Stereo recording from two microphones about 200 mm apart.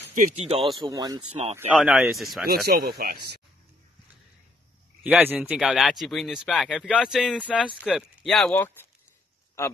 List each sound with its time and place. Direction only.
0.1 s speech: 35° right (ahead or behind)
0.7 s speech: 20° right (ahead or behind)
1.3 s speech: 35° right (ahead or behind)
1.7 s speech: centre (ahead or behind)
2.4 s speech: 50° right (ahead or behind)
5.0 s speech: 10° right (ahead or behind)
8.5 s speech: 10° left (ahead or behind)